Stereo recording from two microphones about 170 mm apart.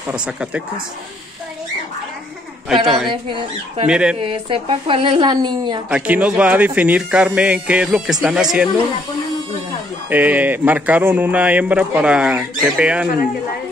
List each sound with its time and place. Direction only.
0.1 s speech: 5° right (ahead or behind)
2.7 s speech: centre (ahead or behind)
3.1 s speech: 30° right (ahead or behind)
3.8 s speech: 5° right (ahead or behind)
4.2 s speech: 30° right (ahead or behind)
5.9 s speech: 10° right (ahead or behind)
10.0 s speech: 10° right (ahead or behind)